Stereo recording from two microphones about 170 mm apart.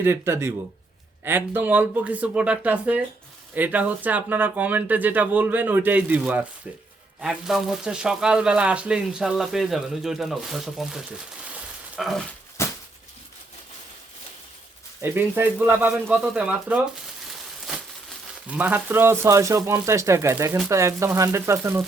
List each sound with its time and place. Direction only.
0.0 s speech: 15° right (ahead or behind)
11.4 s frying: 5° right (ahead or behind)
12.6 s a sound: 15° left (ahead or behind)
15.0 s speech: 15° right (ahead or behind)
18.4 s speech: 10° right (ahead or behind)